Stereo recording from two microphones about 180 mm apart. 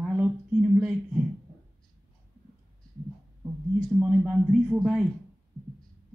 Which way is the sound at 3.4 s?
10° right (ahead or behind).